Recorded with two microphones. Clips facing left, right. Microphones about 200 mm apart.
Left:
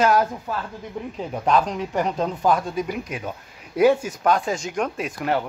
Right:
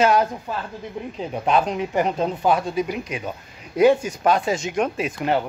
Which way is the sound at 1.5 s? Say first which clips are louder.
Right 2 dB; 5° right (ahead or behind).